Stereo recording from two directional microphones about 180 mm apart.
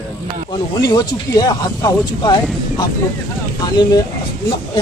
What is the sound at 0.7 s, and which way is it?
Speech, 25° left (ahead or behind).